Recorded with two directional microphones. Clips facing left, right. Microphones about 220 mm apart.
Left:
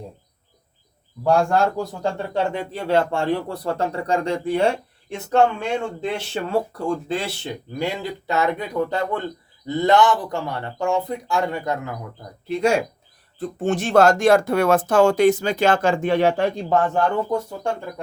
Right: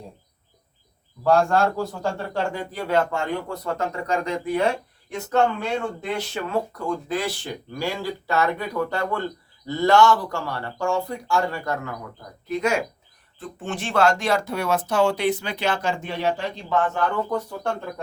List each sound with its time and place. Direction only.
1.2 s a man's voice: 15° left (ahead or behind)
6.3 s a man's voice: 30° left (ahead or behind)
12.5 s speech: 30° left (ahead or behind)
13.4 s speech: 40° left (ahead or behind); by 16.6 s 60° left (ahead or behind)
16.6 s speech: 40° left (ahead or behind)
17.2 s speech: 10° left (ahead or behind)